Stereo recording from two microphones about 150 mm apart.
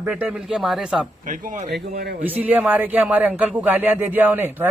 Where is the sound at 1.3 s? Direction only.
60° right (ahead or behind).